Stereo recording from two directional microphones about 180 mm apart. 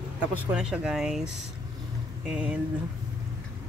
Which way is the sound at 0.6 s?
5° right (ahead or behind).